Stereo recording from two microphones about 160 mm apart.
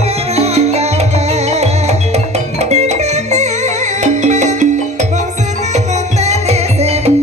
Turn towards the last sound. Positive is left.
turn(degrees=-40)  # may be behind; listen again after turning